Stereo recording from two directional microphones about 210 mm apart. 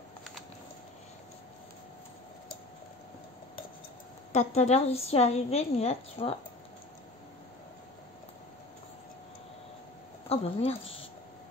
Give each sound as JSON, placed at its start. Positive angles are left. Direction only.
{"t": 4.6, "sound": "a woman's voice", "side_deg": 30}
{"t": 10.3, "sound": "a woman's voice", "side_deg": 30}